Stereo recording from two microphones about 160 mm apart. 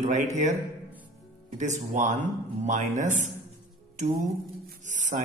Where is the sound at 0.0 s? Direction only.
50° right (ahead or behind).